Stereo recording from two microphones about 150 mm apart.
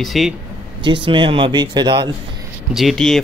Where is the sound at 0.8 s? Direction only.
35° right (ahead or behind).